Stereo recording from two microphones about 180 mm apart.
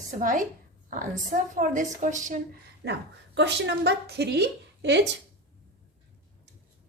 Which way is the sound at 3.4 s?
75° right (ahead or behind).